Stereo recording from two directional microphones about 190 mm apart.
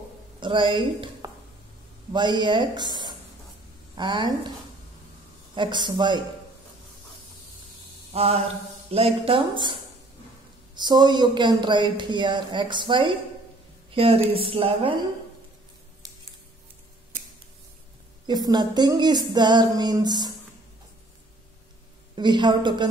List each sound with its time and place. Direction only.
0.4 s speech: 25° right (ahead or behind)
5.5 s speech: 25° right (ahead or behind)
8.1 s mantra: 30° right (ahead or behind)
8.9 s speech: 30° right (ahead or behind)
10.8 s speech: 20° right (ahead or behind)
18.2 s speech: 20° right (ahead or behind)
22.1 s speech: 25° right (ahead or behind)